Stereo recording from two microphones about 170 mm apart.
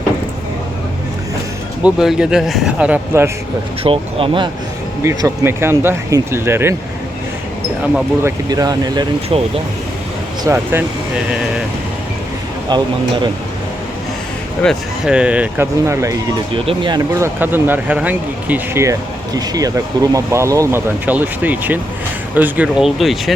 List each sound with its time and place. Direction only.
1.8 s speech: 5° right (ahead or behind)
3.8 s speech: 35° right (ahead or behind)
5.0 s speech: 20° right (ahead or behind)
8.2 s speech: 20° right (ahead or behind)
9.3 s speech: 35° right (ahead or behind)
10.4 s speech: 15° right (ahead or behind)
12.7 s speech: 25° right (ahead or behind)
14.6 s speech: centre (ahead or behind); by 16.1 s 15° right (ahead or behind)
16.6 s speech: 30° right (ahead or behind)
17.2 s speech: 15° right (ahead or behind)